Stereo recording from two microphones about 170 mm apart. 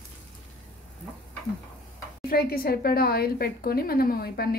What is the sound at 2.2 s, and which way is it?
A woman's voice, 60° left (ahead or behind).